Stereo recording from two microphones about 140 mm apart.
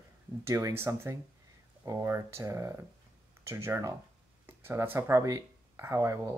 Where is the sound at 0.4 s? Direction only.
20° right (ahead or behind).